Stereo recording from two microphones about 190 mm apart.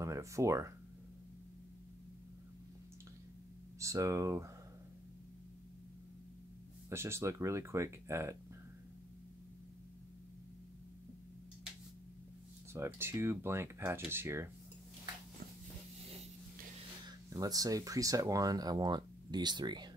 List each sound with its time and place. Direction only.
0.0 s speech: 15° right (ahead or behind)
3.8 s speech: 15° right (ahead or behind)
6.9 s speech: 15° right (ahead or behind)
12.7 s speech: 10° right (ahead or behind)
17.3 s speech: 20° right (ahead or behind)